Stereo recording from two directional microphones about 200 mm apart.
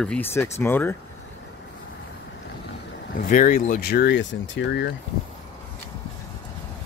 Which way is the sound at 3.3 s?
45° left (ahead or behind).